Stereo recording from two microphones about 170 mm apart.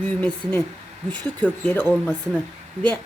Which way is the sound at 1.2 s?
10° left (ahead or behind).